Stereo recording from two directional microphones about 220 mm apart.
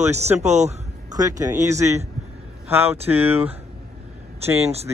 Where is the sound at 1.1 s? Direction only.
15° right (ahead or behind).